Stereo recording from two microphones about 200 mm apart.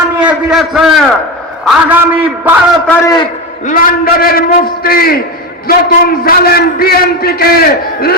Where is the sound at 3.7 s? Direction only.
45° left (ahead or behind).